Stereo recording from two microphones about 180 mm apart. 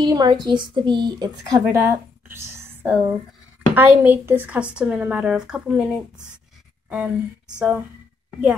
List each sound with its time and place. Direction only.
0.0 s a woman's voice: 25° right (ahead or behind); by 7.8 s 5° right (ahead or behind)